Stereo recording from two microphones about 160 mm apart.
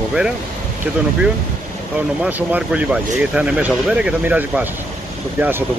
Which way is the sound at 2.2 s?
10° right (ahead or behind).